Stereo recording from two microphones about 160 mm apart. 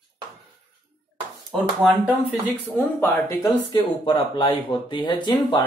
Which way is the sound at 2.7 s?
15° left (ahead or behind).